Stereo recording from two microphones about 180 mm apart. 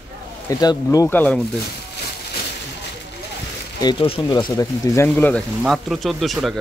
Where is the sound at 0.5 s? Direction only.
20° left (ahead or behind).